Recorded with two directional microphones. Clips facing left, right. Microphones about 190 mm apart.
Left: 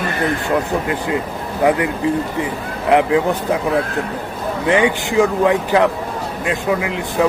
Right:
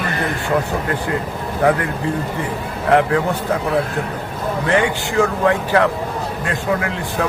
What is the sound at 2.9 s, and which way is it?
Speech, 15° left (ahead or behind).